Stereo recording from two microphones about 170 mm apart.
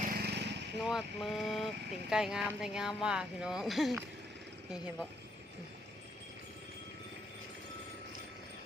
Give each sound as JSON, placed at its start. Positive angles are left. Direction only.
{"t": 0.1, "sound": "vehicle", "side_deg": -70}
{"t": 0.8, "sound": "speech", "side_deg": -5}